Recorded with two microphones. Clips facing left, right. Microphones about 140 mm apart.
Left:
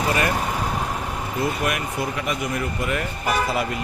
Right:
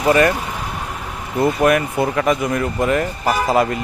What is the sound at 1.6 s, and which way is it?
Speech, 55° right (ahead or behind).